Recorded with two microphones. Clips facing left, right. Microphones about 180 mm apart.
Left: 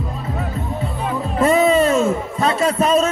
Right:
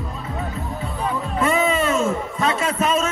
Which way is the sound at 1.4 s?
35° left (ahead or behind).